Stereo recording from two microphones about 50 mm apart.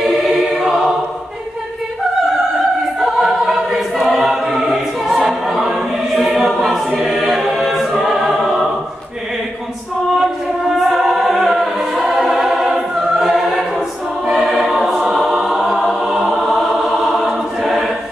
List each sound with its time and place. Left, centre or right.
0.0 s choir: centre
3.0 s choir: centre
10.1 s music: centre
14.7 s choir: centre